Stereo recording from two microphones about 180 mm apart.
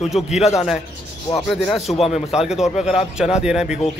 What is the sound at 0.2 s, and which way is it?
Speech, 30° left (ahead or behind).